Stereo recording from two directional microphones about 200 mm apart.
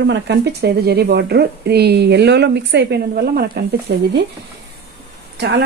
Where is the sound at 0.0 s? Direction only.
60° right (ahead or behind).